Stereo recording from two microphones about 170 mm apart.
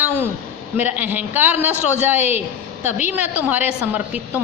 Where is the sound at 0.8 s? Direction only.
10° right (ahead or behind).